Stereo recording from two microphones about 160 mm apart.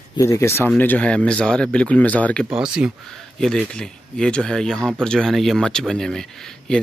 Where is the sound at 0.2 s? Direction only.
15° left (ahead or behind).